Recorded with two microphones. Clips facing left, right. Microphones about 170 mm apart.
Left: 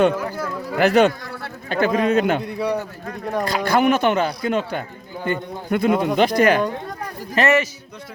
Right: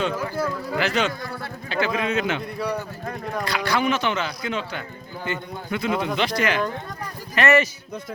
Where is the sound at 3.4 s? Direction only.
50° left (ahead or behind).